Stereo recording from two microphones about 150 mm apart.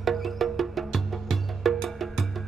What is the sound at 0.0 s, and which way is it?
Music, centre (ahead or behind).